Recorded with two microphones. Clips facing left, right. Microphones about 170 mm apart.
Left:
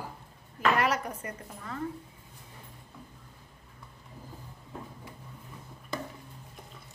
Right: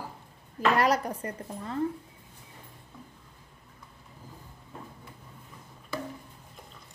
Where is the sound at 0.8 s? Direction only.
35° right (ahead or behind).